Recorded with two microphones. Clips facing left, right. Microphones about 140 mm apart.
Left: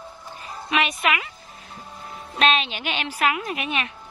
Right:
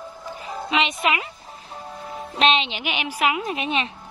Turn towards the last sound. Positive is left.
turn(degrees=-25)  # may be behind; listen again after turning